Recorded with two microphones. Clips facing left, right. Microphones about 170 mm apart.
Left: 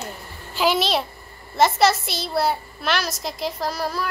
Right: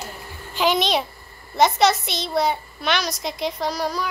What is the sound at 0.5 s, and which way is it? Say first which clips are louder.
A woman's voice: even; 5° left (ahead or behind).